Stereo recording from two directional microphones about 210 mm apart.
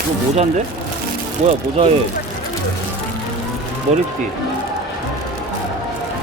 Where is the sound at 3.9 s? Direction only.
35° right (ahead or behind).